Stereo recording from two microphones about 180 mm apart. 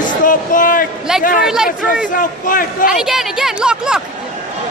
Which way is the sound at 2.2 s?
50° left (ahead or behind).